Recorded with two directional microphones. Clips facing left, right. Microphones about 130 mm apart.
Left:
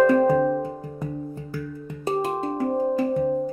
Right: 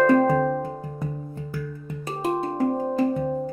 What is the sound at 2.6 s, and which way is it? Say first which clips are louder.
Music: left 2 dB; 5° left (ahead or behind).